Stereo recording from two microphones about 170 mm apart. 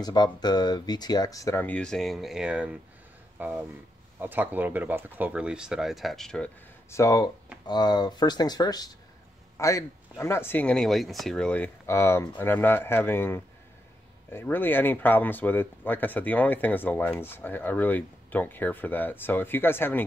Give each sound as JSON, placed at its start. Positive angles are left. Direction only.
{"t": 0.0, "sound": "speech", "side_deg": 25}
{"t": 6.9, "sound": "speech", "side_deg": 20}